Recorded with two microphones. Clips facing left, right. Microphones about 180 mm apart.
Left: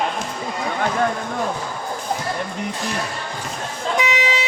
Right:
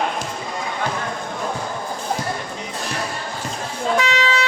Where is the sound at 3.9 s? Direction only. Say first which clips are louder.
Even; 15° left (ahead or behind).